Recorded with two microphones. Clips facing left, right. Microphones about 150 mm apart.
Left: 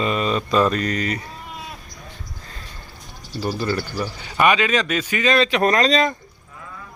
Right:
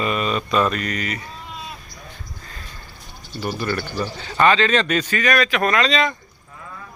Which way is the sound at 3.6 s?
20° left (ahead or behind).